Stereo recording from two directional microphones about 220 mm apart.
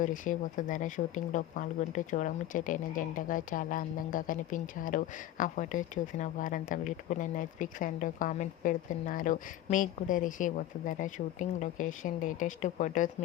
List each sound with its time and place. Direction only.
0.0 s speech: 35° left (ahead or behind)